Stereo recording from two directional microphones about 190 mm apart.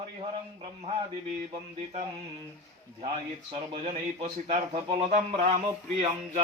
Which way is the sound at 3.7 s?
35° right (ahead or behind).